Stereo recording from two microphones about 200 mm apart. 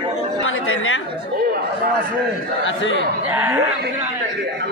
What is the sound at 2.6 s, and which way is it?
Speech, 70° left (ahead or behind).